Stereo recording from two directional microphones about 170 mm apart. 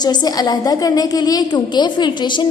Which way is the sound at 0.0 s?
25° left (ahead or behind).